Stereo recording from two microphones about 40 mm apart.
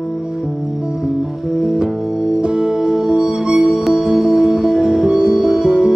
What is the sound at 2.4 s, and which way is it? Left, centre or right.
Music, centre.